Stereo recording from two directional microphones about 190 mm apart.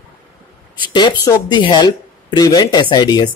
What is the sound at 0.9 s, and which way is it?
Speech, 25° left (ahead or behind).